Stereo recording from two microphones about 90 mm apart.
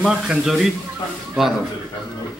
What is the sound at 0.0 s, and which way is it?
Speech, 5° right (ahead or behind).